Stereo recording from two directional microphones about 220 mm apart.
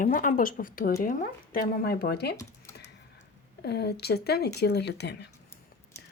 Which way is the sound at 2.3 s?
15° left (ahead or behind).